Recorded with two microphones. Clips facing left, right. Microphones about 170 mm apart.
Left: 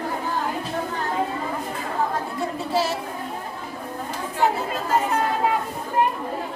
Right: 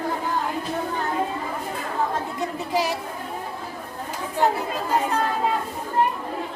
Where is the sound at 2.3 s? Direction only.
15° right (ahead or behind).